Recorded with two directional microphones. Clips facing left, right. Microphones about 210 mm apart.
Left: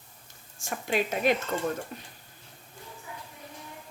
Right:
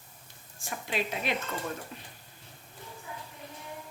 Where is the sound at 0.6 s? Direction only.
45° left (ahead or behind).